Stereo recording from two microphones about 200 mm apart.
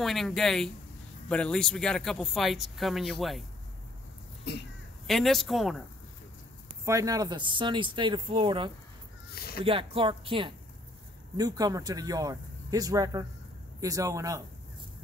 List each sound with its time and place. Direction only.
0.0 s speech: centre (ahead or behind)
5.0 s speech: centre (ahead or behind)
6.8 s speech: 15° right (ahead or behind)
9.3 s a sound: 50° left (ahead or behind)
9.7 s speech: 25° right (ahead or behind)